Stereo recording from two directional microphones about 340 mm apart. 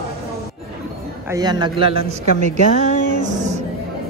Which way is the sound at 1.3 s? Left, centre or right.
Centre.